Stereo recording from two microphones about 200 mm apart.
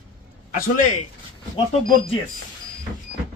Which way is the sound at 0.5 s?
40° left (ahead or behind).